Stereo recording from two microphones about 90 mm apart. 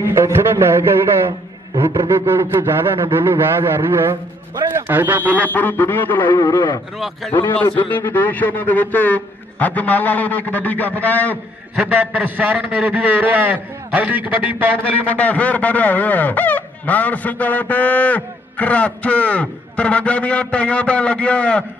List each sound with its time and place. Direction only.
0.0 s a man's voice: 30° right (ahead or behind)
5.5 s a sound: 20° left (ahead or behind)
6.4 s speech: 55° left (ahead or behind)
7.3 s speech: 20° left (ahead or behind)
11.7 s a man's voice: 15° right (ahead or behind)
15.0 s speech: 15° left (ahead or behind)